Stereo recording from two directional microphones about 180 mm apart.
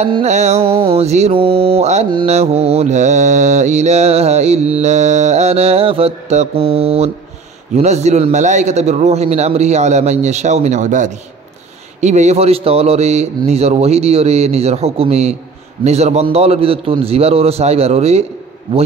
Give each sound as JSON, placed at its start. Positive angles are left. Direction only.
{"t": 0.2, "sound": "mantra", "side_deg": -40}